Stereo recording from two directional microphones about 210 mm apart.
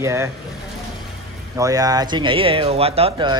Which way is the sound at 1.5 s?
15° right (ahead or behind).